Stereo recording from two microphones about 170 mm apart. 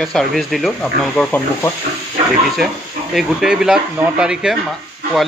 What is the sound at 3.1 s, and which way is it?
Speech, centre (ahead or behind).